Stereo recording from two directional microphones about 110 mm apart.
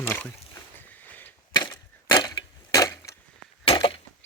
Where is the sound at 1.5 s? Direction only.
40° left (ahead or behind).